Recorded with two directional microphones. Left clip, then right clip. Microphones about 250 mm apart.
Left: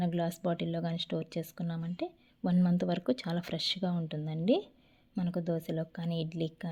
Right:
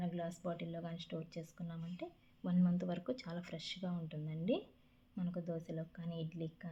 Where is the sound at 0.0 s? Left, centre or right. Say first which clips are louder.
Left 10 dB; left.